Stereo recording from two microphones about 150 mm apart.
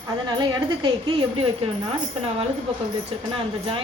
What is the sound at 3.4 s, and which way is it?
Speech, 35° right (ahead or behind).